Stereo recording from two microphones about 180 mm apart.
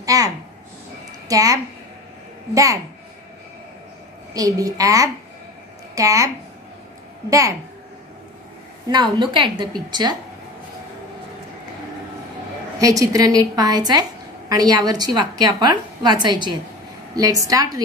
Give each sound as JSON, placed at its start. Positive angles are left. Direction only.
{"t": 0.0, "sound": "a sound", "side_deg": -20}
{"t": 1.3, "sound": "a woman's voice", "side_deg": -20}
{"t": 4.3, "sound": "a woman's voice", "side_deg": -20}
{"t": 8.8, "sound": "a woman's voice", "side_deg": -25}
{"t": 12.7, "sound": "a woman's voice", "side_deg": -20}